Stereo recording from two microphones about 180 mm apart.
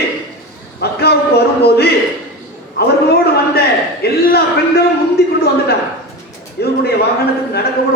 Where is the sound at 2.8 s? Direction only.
60° left (ahead or behind).